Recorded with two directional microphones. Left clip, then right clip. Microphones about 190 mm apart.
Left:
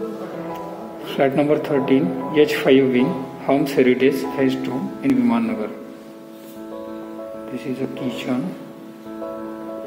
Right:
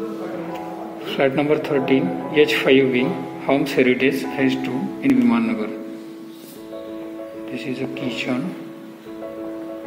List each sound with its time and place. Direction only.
1.0 s speech: 15° left (ahead or behind)
7.5 s speech: 10° left (ahead or behind)